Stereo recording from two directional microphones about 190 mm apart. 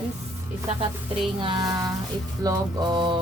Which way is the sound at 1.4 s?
25° right (ahead or behind).